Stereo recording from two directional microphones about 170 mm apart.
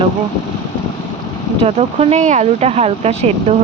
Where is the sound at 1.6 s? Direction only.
35° right (ahead or behind).